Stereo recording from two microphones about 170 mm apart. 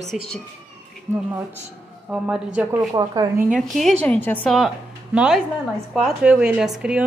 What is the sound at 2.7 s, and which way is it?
Speech, 20° right (ahead or behind).